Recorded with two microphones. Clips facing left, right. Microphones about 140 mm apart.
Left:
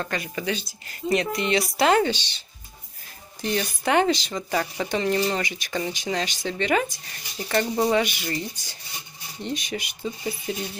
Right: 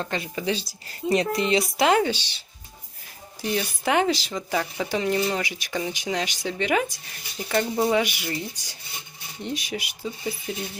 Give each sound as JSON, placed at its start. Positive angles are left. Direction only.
{"t": 0.0, "sound": "speech", "side_deg": -20}
{"t": 1.8, "sound": "speech", "side_deg": -10}